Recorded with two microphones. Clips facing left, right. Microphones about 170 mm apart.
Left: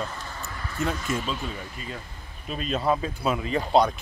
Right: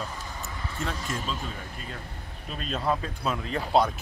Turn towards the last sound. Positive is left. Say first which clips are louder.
# left 3 dB
turn(degrees=-5)  # may be behind; listen again after turning